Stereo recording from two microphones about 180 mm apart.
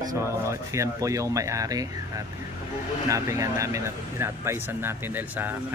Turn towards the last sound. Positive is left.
turn(degrees=-10)  # may be behind; listen again after turning